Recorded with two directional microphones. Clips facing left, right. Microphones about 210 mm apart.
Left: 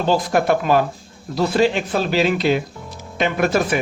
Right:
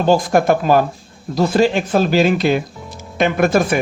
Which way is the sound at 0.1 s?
45° right (ahead or behind).